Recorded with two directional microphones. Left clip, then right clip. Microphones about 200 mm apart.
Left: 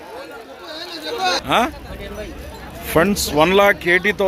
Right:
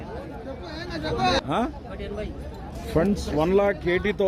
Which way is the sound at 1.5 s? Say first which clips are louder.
Left 9 dB; centre (ahead or behind).